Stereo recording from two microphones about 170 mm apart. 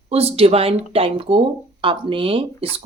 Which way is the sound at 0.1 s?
35° right (ahead or behind).